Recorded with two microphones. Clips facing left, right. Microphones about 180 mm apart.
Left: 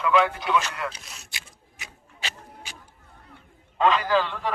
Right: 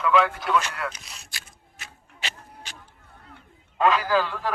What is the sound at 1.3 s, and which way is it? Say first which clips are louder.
Typewriter: left 1 dB; 20° left (ahead or behind).